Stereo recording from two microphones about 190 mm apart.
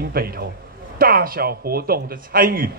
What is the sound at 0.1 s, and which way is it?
A man's voice, 55° right (ahead or behind).